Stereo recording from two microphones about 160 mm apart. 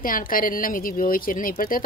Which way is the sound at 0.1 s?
60° left (ahead or behind).